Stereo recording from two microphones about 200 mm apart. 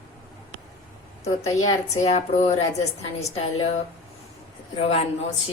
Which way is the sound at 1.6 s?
35° left (ahead or behind).